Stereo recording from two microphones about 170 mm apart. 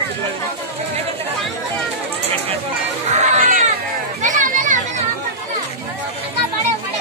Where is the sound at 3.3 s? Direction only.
55° right (ahead or behind).